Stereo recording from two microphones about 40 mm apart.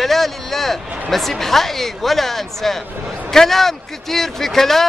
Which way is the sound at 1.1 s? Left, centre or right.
Centre.